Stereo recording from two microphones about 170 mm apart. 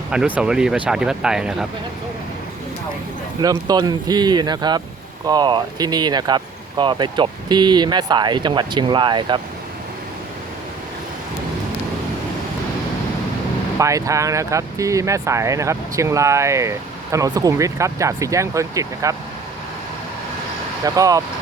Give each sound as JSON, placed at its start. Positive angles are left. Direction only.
{"t": 0.1, "sound": "speech", "side_deg": -5}
{"t": 3.4, "sound": "speech", "side_deg": -20}
{"t": 13.7, "sound": "speech", "side_deg": -20}
{"t": 20.8, "sound": "speech", "side_deg": -20}